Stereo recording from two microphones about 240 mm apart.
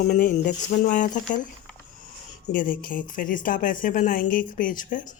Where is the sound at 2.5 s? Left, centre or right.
Left.